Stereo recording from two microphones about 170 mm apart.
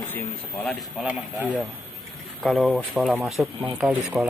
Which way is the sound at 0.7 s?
5° right (ahead or behind).